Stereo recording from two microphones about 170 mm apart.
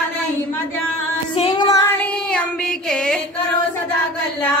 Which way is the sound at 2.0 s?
5° left (ahead or behind).